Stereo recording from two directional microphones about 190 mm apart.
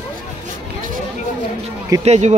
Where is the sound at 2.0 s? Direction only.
35° right (ahead or behind).